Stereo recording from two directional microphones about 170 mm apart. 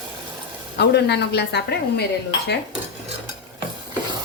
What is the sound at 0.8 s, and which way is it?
Speech, 80° left.